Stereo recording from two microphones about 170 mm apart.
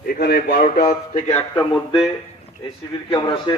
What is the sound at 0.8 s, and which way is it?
Speech, 45° left (ahead or behind).